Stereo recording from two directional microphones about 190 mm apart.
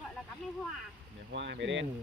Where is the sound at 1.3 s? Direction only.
70° right (ahead or behind).